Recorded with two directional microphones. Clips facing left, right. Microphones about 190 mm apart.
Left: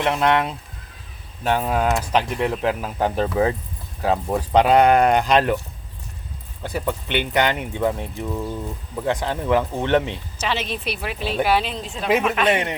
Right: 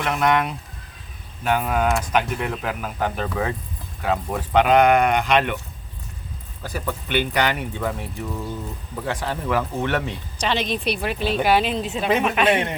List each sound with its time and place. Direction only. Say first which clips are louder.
0.0 s speech: left 1 dB; 25° left (ahead or behind)
6.6 s speech: left 3 dB; 20° left (ahead or behind)
10.4 s speech: right 3 dB; 5° left (ahead or behind)